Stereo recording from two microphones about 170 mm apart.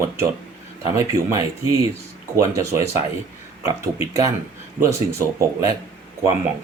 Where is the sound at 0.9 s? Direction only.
20° right (ahead or behind).